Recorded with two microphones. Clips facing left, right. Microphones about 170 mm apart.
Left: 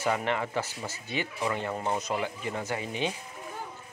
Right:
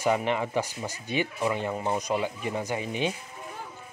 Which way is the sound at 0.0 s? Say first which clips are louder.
Right 3 dB; 15° right (ahead or behind).